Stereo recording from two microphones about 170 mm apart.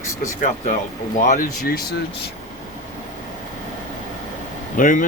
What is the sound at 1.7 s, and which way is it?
Speech, 65° left (ahead or behind).